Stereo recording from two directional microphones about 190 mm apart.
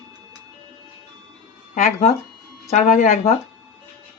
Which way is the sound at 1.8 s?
40° left (ahead or behind).